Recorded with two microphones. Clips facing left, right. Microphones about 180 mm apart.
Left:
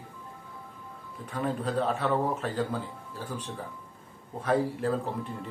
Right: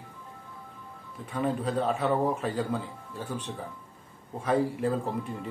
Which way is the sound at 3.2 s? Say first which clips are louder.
Right 2 dB; 10° left (ahead or behind).